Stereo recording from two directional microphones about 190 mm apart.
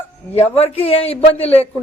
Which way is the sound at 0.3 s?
35° left (ahead or behind).